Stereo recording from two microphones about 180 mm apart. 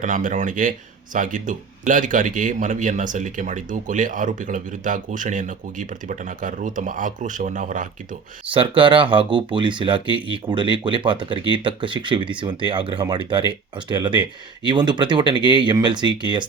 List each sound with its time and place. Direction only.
0.0 s a man's voice: 45° right (ahead or behind)
8.5 s speech: 30° right (ahead or behind)